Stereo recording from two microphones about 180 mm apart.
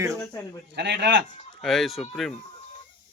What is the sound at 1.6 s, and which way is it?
Speech, centre (ahead or behind).